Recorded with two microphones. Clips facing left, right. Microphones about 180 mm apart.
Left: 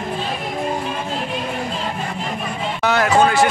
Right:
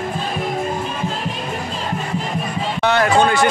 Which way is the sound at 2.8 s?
5° left (ahead or behind).